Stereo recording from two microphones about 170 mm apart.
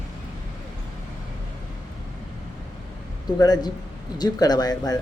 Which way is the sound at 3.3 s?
25° left (ahead or behind).